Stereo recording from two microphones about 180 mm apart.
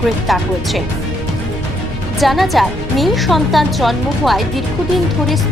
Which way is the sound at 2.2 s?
Centre (ahead or behind).